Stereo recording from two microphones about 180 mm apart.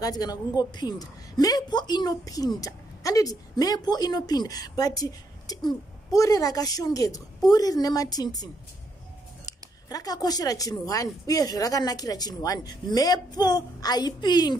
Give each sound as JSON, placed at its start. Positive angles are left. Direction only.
{"t": 0.0, "sound": "a woman's voice", "side_deg": 20}
{"t": 9.5, "sound": "a woman's voice", "side_deg": 20}